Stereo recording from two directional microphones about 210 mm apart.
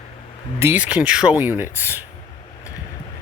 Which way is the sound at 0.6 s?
10° right (ahead or behind).